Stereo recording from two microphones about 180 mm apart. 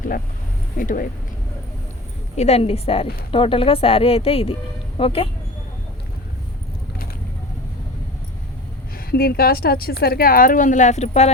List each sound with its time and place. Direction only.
0.8 s speech: 50° left (ahead or behind)
2.3 s speech: 35° left (ahead or behind)
9.0 s a woman's voice: 55° left (ahead or behind); by 11.3 s 40° left (ahead or behind)